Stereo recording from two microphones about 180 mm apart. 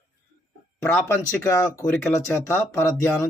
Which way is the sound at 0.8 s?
10° left (ahead or behind).